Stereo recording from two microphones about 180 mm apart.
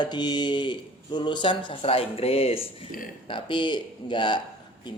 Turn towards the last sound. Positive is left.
turn(degrees=25)  # may be behind; listen again after turning